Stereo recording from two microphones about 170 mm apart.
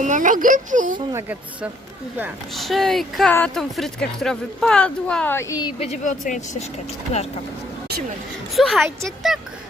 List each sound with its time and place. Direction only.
0.0 s speech: 50° right (ahead or behind)
1.1 s speech: 10° right (ahead or behind)
2.6 s speech: centre (ahead or behind); by 5.7 s 20° left (ahead or behind)
5.8 s speech: 45° left (ahead or behind)
8.5 s speech: centre (ahead or behind)